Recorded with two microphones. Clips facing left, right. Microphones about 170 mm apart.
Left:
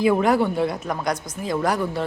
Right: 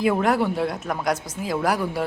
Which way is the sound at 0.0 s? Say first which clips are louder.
Left 2 dB; centre (ahead or behind).